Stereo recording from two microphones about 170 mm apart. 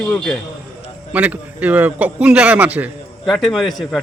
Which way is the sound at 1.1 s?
10° right (ahead or behind).